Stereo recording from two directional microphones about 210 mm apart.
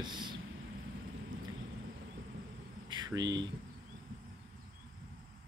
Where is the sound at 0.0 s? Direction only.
20° right (ahead or behind).